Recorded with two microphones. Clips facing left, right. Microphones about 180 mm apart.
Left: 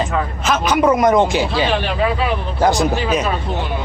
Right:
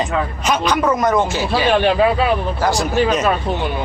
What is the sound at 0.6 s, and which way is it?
Music, 10° left (ahead or behind).